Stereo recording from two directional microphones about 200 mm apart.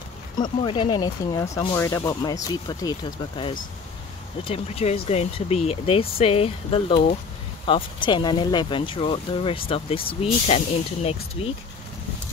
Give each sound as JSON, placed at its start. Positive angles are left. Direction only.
{"t": 0.4, "sound": "speech", "side_deg": 20}